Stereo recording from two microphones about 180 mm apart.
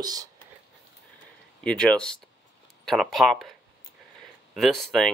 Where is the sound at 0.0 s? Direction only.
20° right (ahead or behind).